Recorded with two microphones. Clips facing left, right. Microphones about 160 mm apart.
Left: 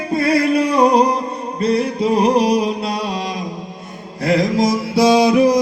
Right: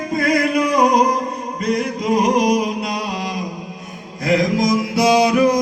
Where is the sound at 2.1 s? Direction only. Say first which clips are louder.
Left 1 dB; 30° left (ahead or behind).